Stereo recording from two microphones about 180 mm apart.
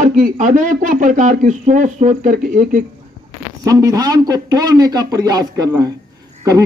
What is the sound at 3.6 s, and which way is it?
A man's voice, 20° right (ahead or behind).